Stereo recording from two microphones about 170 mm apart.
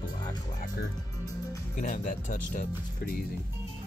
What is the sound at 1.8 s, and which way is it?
Speech, 45° left (ahead or behind).